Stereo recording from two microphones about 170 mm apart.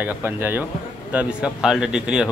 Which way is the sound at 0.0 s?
10° right (ahead or behind).